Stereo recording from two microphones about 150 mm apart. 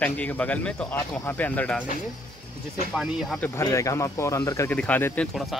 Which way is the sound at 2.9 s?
Centre (ahead or behind).